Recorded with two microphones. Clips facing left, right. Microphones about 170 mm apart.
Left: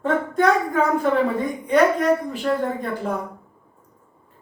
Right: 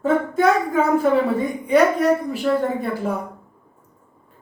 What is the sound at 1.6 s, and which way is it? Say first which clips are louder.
A woman's voice: right 1 dB; 5° right (ahead or behind).